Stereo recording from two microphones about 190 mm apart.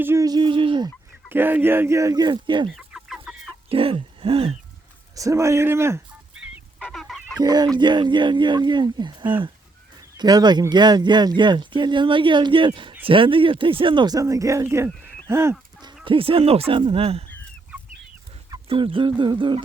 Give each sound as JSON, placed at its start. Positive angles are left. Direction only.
{"t": 0.0, "sound": "speech", "side_deg": -15}
{"t": 1.3, "sound": "speech", "side_deg": -10}
{"t": 2.6, "sound": "chicken", "side_deg": 0}
{"t": 3.7, "sound": "a sound", "side_deg": -30}
{"t": 5.1, "sound": "speech", "side_deg": -15}
{"t": 6.4, "sound": "goose", "side_deg": 0}
{"t": 7.3, "sound": "speech", "side_deg": -20}
{"t": 16.0, "sound": "speech", "side_deg": -30}
{"t": 18.5, "sound": "speech", "side_deg": -25}